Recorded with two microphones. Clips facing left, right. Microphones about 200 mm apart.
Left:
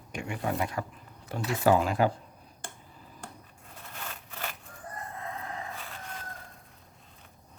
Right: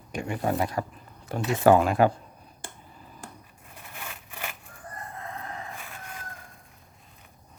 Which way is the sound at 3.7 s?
15° right (ahead or behind).